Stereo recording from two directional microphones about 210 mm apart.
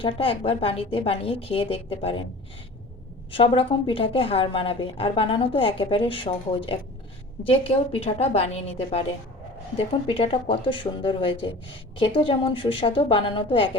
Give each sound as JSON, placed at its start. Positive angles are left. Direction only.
{"t": 0.0, "sound": "a woman's voice", "side_deg": 25}
{"t": 3.3, "sound": "a woman's voice", "side_deg": 25}